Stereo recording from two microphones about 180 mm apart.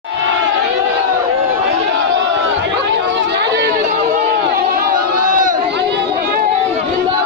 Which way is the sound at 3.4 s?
70° right (ahead or behind).